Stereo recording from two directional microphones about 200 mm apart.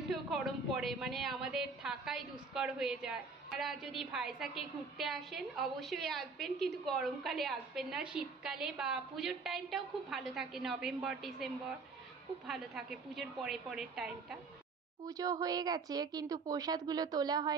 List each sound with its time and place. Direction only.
0.1 s a woman's voice: centre (ahead or behind)
15.0 s speech: 15° right (ahead or behind)